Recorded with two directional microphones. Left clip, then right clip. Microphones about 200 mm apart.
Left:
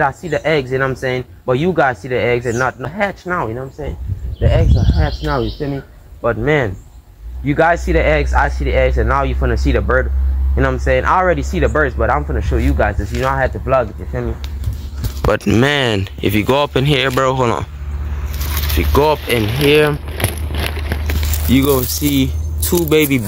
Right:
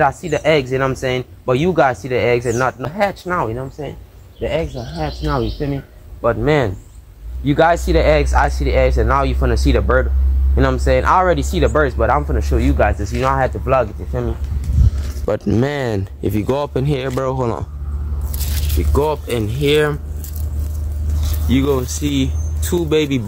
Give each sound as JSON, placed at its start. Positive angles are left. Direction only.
{"t": 0.0, "sound": "speech", "side_deg": 0}
{"t": 18.9, "sound": "speech", "side_deg": 15}
{"t": 21.5, "sound": "speech", "side_deg": 30}